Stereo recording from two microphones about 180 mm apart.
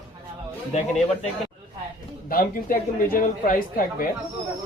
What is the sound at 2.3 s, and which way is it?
Speech, 50° left (ahead or behind).